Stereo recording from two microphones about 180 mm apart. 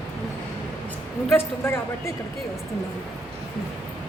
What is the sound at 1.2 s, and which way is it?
Speech, 15° left (ahead or behind).